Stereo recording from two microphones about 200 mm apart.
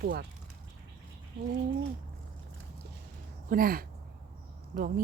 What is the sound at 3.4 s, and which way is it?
Speech, 45° right (ahead or behind).